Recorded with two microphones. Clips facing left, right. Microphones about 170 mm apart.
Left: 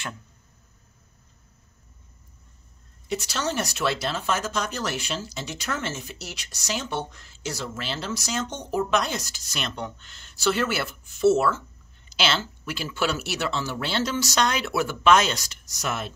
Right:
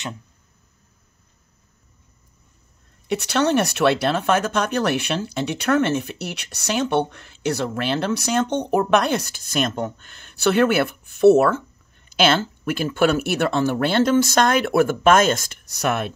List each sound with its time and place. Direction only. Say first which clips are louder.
3.1 s speech: right 9 dB; 65° right (ahead or behind)